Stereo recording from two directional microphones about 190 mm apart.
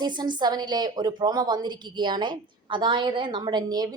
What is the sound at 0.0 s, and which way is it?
A woman's voice, 25° right (ahead or behind).